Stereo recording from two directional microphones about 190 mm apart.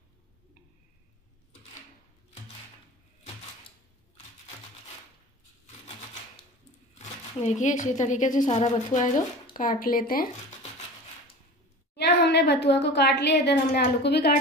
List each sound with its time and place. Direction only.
7.0 s speech: 40° left (ahead or behind)
12.0 s a woman's voice: 60° left (ahead or behind)